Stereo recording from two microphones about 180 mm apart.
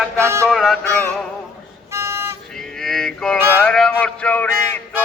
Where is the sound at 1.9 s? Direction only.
15° right (ahead or behind).